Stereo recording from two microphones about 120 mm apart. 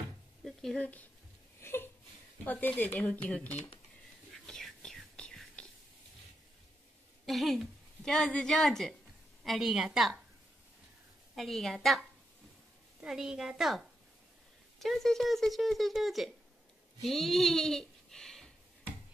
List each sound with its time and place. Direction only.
0.4 s a sound: 5° left (ahead or behind)
1.6 s a sound: 20° left (ahead or behind)
2.4 s speech: 15° left (ahead or behind)
4.3 s whispering: centre (ahead or behind)
7.2 s a woman's voice: centre (ahead or behind)
11.3 s speech: centre (ahead or behind)